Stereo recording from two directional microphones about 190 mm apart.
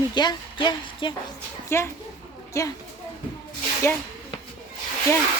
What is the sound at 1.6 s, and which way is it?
Speech, 15° left (ahead or behind).